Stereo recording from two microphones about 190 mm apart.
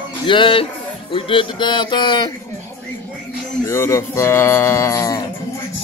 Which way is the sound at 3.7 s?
15° left (ahead or behind).